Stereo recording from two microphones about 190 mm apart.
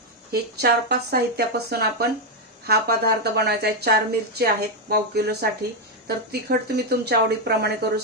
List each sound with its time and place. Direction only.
0.3 s a woman's voice: 55° right (ahead or behind)